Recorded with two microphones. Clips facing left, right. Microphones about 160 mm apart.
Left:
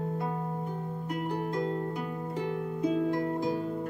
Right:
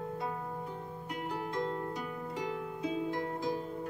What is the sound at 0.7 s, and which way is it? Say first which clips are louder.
Music: left 6 dB; 45° left (ahead or behind).